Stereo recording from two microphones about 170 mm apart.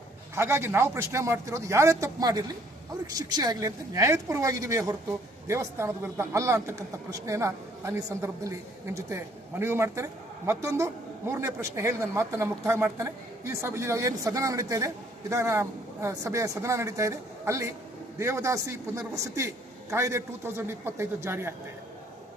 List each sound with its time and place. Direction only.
0.3 s a man's voice: 15° right (ahead or behind)